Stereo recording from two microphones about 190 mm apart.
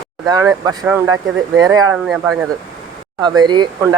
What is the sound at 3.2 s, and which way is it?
Speech, 25° right (ahead or behind).